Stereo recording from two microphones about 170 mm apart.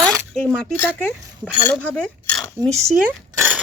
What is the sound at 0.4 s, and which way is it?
Speech, 10° left (ahead or behind).